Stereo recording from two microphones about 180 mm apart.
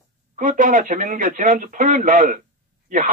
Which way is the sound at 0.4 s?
45° right (ahead or behind).